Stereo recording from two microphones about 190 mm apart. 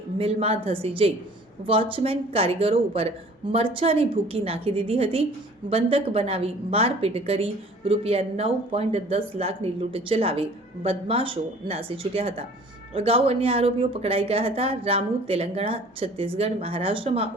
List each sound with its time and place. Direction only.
0.2 s a woman's voice: 30° right (ahead or behind)